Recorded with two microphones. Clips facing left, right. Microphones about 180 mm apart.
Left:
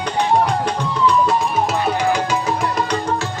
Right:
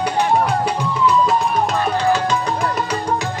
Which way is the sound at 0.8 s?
5° right (ahead or behind).